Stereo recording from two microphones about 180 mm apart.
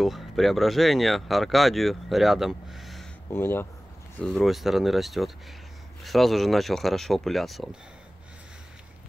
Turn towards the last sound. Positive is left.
turn(degrees=0)  # may be behind; listen again after turning